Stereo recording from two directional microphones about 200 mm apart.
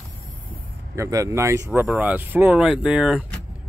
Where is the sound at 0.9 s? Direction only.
15° right (ahead or behind).